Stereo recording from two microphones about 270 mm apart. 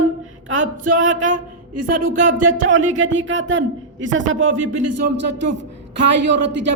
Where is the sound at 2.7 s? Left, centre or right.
Right.